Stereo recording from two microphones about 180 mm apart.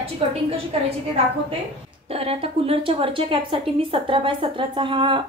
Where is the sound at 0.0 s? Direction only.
35° right (ahead or behind).